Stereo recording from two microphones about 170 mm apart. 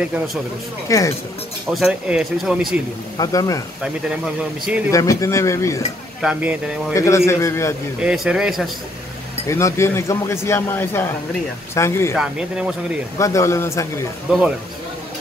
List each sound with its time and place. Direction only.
0.8 s speech: 20° left (ahead or behind)
1.7 s speech: centre (ahead or behind)
3.2 s speech: 20° left (ahead or behind)
4.9 s speech: 20° left (ahead or behind)
6.2 s speech: 5° right (ahead or behind)
6.9 s speech: 15° left (ahead or behind)
8.0 s speech: 5° right (ahead or behind)
9.5 s speech: 15° left (ahead or behind)
12.2 s speech: 5° right (ahead or behind)
13.2 s speech: 15° left (ahead or behind)
14.3 s speech: 5° right (ahead or behind)